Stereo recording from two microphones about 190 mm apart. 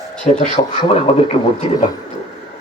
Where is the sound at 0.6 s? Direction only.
35° left (ahead or behind).